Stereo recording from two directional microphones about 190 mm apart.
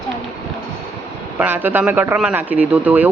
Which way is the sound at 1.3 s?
10° right (ahead or behind).